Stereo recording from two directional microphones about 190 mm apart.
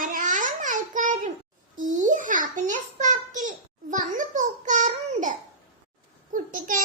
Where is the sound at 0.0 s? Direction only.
45° right (ahead or behind).